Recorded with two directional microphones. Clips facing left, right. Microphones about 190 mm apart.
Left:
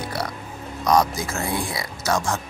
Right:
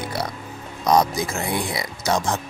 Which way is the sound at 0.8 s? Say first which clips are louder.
Right 1 dB; 20° right (ahead or behind).